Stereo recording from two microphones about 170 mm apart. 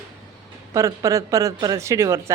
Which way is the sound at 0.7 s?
20° right (ahead or behind).